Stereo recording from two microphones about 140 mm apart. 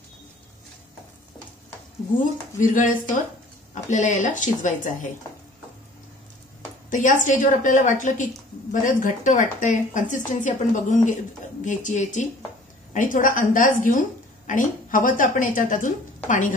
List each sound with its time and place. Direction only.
2.5 s a woman's voice: 70° left (ahead or behind)
3.7 s speech: 60° left (ahead or behind)
6.9 s speech: 65° left (ahead or behind)
12.9 s a woman's voice: 70° left (ahead or behind)